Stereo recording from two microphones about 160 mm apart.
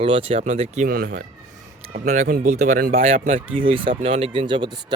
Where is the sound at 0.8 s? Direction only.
65° right (ahead or behind).